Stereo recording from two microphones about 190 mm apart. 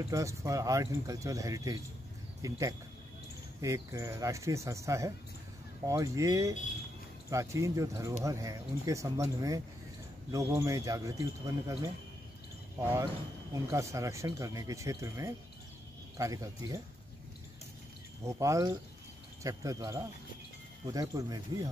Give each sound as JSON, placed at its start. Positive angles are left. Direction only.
{"t": 0.1, "sound": "speech", "side_deg": -15}
{"t": 3.6, "sound": "speech", "side_deg": -15}
{"t": 12.7, "sound": "speech", "side_deg": -15}
{"t": 18.2, "sound": "speech", "side_deg": -15}